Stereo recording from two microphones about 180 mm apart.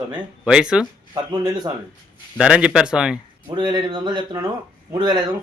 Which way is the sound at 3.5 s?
25° right (ahead or behind).